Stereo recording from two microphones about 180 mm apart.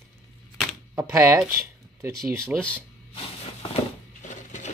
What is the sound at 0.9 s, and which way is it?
Speech, 15° right (ahead or behind).